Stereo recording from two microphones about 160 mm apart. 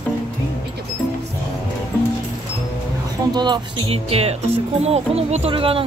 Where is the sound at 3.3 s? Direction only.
30° right (ahead or behind).